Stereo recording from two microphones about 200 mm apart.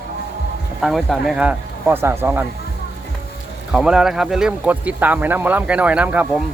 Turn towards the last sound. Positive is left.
turn(degrees=-5)  # may be behind; listen again after turning